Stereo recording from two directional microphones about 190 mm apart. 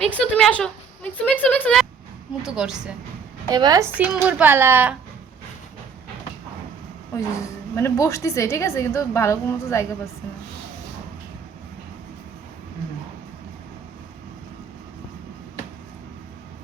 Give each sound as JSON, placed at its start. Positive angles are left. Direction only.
{"t": 0.0, "sound": "a woman's voice", "side_deg": 5}
{"t": 3.5, "sound": "a woman's voice", "side_deg": -20}
{"t": 3.9, "sound": "a woman's voice", "side_deg": -5}
{"t": 7.2, "sound": "a woman's voice", "side_deg": 15}